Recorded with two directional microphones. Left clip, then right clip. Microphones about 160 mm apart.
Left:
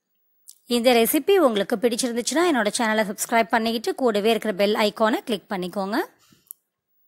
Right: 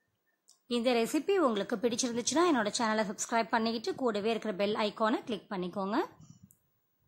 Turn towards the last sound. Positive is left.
turn(degrees=30)  # may be behind; listen again after turning